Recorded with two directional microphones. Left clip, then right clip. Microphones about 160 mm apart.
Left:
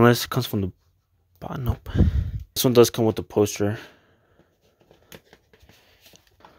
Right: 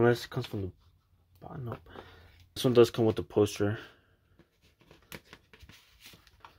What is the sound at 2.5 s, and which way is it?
Speech, 40° left (ahead or behind).